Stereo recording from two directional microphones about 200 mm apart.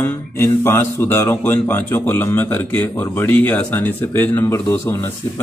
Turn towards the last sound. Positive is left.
turn(degrees=10)  # may be behind; listen again after turning